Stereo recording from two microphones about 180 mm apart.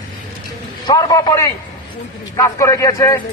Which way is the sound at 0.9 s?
20° left (ahead or behind).